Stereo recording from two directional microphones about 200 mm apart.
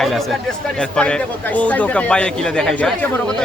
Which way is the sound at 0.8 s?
5° left (ahead or behind).